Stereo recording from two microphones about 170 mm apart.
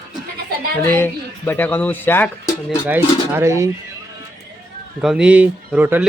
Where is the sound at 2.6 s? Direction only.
10° right (ahead or behind).